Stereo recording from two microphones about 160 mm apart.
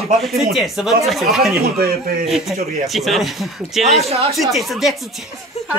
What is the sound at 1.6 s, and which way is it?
Speech, 70° right (ahead or behind).